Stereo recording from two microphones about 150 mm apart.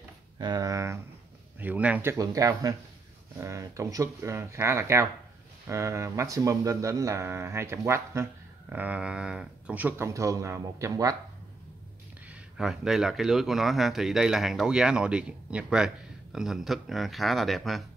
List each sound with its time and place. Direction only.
0.4 s speech: 25° right (ahead or behind)
12.3 s speech: 5° right (ahead or behind)